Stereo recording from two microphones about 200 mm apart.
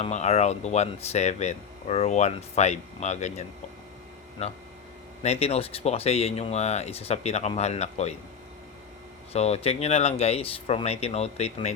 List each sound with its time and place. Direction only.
0.0 s speech: 35° left (ahead or behind)
9.3 s speech: 30° left (ahead or behind)